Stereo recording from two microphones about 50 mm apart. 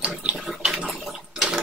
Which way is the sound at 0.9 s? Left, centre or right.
Centre.